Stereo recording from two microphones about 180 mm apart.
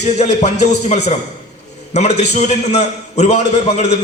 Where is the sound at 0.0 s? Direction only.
40° left (ahead or behind).